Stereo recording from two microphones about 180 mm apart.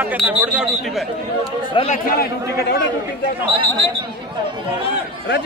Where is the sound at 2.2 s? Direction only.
60° left (ahead or behind).